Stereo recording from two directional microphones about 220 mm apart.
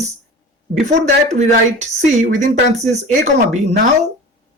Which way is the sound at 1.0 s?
30° right (ahead or behind).